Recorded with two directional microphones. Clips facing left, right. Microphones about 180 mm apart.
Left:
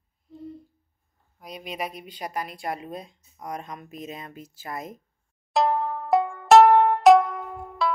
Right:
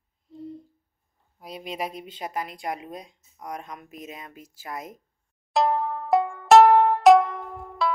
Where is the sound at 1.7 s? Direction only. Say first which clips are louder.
Right 1 dB; 25° right (ahead or behind); by 4.9 s 10° right (ahead or behind).